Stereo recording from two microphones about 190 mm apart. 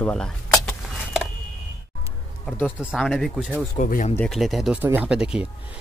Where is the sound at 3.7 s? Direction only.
40° left (ahead or behind).